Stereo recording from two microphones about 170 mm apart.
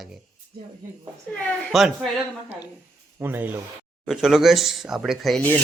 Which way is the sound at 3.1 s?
10° right (ahead or behind).